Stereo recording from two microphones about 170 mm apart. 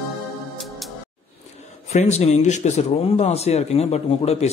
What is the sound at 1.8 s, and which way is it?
A man's voice, 40° left (ahead or behind).